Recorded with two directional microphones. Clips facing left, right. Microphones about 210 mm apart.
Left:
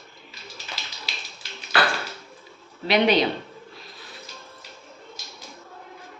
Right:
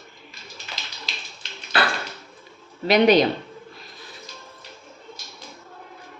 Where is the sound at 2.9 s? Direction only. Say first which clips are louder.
Right 4 dB; 45° right (ahead or behind).